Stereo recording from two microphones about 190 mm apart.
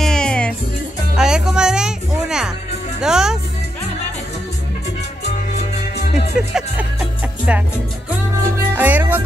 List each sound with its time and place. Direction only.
0.0 s music: 5° left (ahead or behind)
3.0 s speech: 5° right (ahead or behind)
5.3 s music: 35° left (ahead or behind)
6.5 s music: 5° right (ahead or behind)
8.7 s music: 10° right (ahead or behind)